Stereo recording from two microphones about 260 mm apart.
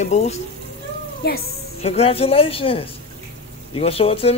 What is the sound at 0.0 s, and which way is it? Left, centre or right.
Speech, left.